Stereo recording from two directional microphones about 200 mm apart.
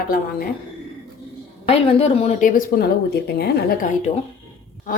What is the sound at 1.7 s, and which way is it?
Speech, 30° left (ahead or behind).